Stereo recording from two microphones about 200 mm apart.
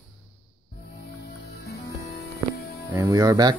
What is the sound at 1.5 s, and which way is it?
Music, 50° left (ahead or behind).